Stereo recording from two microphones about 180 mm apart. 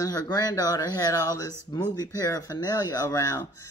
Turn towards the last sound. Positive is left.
turn(degrees=20)  # may be behind; listen again after turning